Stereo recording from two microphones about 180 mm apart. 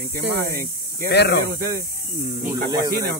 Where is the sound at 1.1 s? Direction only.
65° left (ahead or behind).